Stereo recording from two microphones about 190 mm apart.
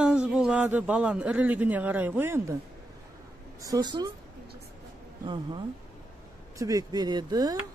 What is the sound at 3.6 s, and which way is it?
Speech, 20° right (ahead or behind).